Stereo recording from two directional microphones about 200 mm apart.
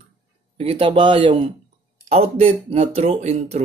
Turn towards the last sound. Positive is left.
turn(degrees=-30)  # may be behind; listen again after turning